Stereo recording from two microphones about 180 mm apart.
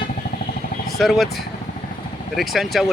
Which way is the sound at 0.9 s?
Centre (ahead or behind).